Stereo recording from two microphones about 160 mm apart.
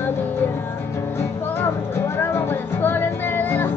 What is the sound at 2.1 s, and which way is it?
Music, 15° left (ahead or behind).